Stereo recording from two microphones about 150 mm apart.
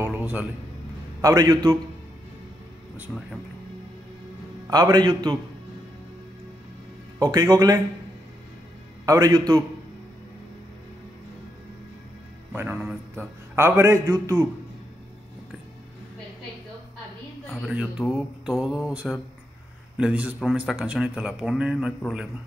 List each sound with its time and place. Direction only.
0.0 s a sound: 10° right (ahead or behind)
1.2 s a man's voice: 25° right (ahead or behind)
4.6 s a man's voice: 25° right (ahead or behind)
7.2 s a man's voice: 25° right (ahead or behind)
9.0 s a man's voice: 25° right (ahead or behind)
12.5 s a man's voice: 10° right (ahead or behind)
17.5 s mantra: centre (ahead or behind)
20.0 s a man's voice: 10° right (ahead or behind)
20.4 s mantra: 5° right (ahead or behind)